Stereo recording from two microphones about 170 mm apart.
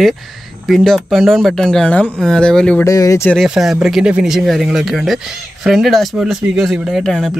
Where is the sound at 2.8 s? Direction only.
20° left (ahead or behind).